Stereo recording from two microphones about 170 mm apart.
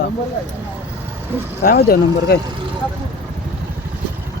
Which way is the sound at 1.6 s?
65° left (ahead or behind).